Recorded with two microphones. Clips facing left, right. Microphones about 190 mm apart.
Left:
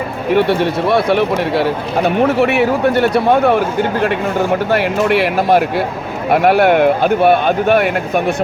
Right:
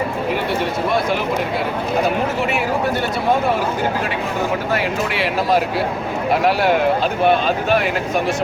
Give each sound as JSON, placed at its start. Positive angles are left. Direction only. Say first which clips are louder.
{"t": 0.9, "sound": "speech", "louder": "left 7 dB", "side_deg": 65}
{"t": 5.0, "sound": "speech", "louder": "left 6 dB", "side_deg": 55}